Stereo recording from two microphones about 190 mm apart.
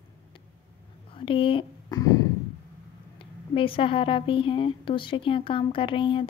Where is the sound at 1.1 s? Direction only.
25° left (ahead or behind).